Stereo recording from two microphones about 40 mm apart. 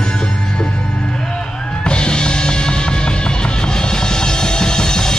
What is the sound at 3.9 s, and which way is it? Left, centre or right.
Music, centre.